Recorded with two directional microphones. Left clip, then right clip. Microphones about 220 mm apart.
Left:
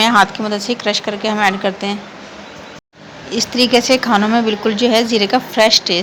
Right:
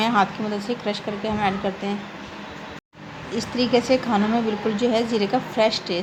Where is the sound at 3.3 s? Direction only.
15° left (ahead or behind).